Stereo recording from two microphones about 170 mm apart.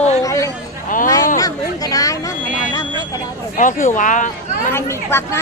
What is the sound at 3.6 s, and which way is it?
Speech, 50° left (ahead or behind).